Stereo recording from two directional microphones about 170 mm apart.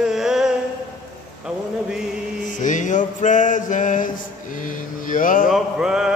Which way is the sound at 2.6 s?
50° left (ahead or behind).